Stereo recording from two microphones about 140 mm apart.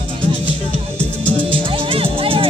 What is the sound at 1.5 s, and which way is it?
Music, 40° right (ahead or behind).